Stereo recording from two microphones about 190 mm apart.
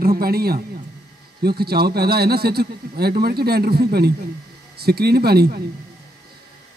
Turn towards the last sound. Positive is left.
turn(degrees=-55)  # may be behind; listen again after turning